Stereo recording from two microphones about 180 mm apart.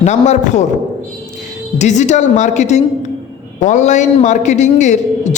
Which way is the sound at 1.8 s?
40° left (ahead or behind).